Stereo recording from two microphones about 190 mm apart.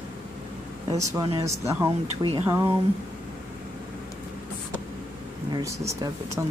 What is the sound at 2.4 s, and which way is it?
Speech, 10° right (ahead or behind).